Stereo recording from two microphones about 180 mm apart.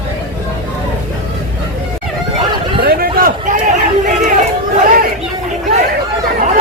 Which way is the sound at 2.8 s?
55° right (ahead or behind).